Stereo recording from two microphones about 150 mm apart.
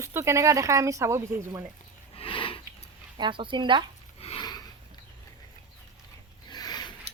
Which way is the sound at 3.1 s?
35° right (ahead or behind).